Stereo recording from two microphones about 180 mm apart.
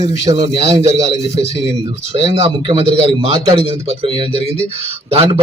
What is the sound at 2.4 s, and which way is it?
Speech, 30° right (ahead or behind).